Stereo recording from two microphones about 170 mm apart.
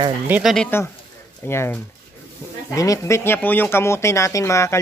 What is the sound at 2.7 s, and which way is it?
Speech, 20° left (ahead or behind).